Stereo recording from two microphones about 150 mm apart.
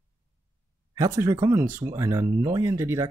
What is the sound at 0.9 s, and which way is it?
Speech, 20° right (ahead or behind).